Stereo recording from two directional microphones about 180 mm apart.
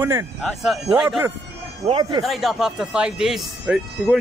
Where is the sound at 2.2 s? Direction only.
Centre (ahead or behind).